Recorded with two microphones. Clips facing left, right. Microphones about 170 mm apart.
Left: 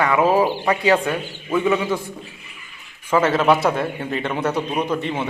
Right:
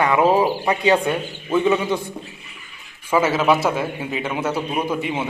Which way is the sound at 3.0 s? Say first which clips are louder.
Left 1 dB; 10° right (ahead or behind).